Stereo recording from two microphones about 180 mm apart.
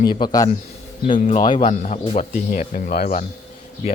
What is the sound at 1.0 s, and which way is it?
Speech, 45° left (ahead or behind).